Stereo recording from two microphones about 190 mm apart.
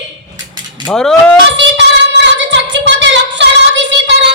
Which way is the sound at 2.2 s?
70° right (ahead or behind).